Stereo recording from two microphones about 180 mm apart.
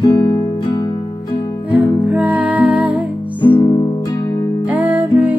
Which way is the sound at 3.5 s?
15° left (ahead or behind).